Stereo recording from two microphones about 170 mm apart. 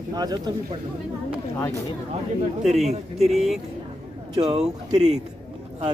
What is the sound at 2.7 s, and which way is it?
Speech, 40° right (ahead or behind).